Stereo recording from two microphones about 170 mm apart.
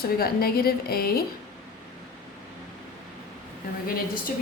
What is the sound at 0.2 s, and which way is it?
A woman's voice, 65° left (ahead or behind).